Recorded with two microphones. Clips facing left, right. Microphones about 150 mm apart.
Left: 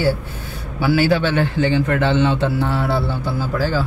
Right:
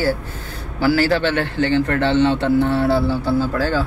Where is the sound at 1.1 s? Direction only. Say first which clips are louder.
Left 1 dB; 10° left (ahead or behind).